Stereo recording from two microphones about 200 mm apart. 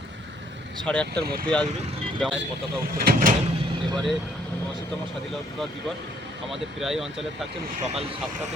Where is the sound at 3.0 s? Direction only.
45° right (ahead or behind).